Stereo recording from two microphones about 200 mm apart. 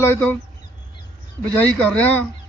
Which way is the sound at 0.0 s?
10° left (ahead or behind).